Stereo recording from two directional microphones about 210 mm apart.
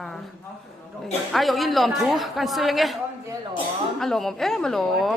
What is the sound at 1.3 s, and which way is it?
A woman's voice, centre (ahead or behind).